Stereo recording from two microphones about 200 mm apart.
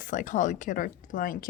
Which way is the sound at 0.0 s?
40° left (ahead or behind).